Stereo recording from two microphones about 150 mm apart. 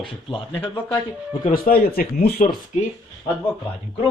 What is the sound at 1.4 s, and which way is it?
Speech, 80° left.